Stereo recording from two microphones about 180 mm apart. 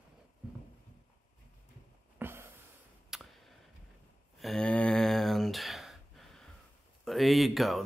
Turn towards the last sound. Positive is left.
turn(degrees=0)  # may be behind; listen again after turning